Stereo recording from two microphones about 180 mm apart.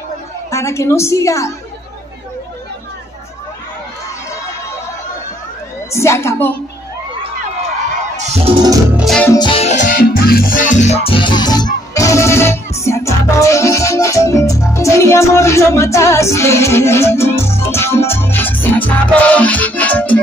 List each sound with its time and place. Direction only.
0.5 s a woman's voice: 15° left (ahead or behind)
5.9 s a woman's voice: 15° left (ahead or behind)
8.2 s music: 35° right (ahead or behind)
8.9 s music: centre (ahead or behind)
9.2 s music: 15° left (ahead or behind)
9.5 s music: 35° left (ahead or behind); by 20.2 s 10° left (ahead or behind)